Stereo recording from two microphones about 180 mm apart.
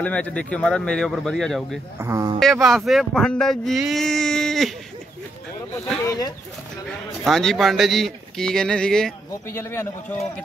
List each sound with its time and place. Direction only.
0.0 s speech: 5° left (ahead or behind)
2.0 s a man's voice: 15° right (ahead or behind)
2.4 s speech: centre (ahead or behind)
6.0 s speech: 20° left (ahead or behind)
7.2 s a man's voice: centre (ahead or behind)